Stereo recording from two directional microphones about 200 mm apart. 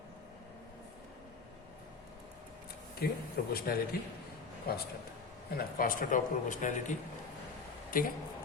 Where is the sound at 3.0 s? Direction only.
50° left (ahead or behind).